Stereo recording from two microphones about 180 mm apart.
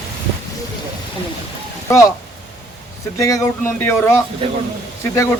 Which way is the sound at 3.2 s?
20° left (ahead or behind).